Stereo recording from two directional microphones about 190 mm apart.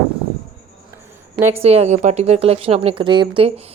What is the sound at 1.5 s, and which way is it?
Speech, 30° right (ahead or behind).